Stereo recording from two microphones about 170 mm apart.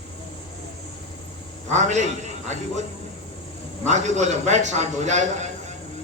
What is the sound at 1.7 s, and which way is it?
Speech, 45° right (ahead or behind).